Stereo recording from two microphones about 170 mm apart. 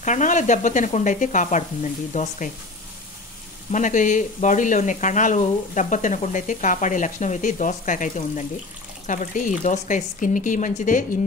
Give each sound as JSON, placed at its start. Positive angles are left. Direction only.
{"t": 0.0, "sound": "speech", "side_deg": 45}
{"t": 3.7, "sound": "speech", "side_deg": 50}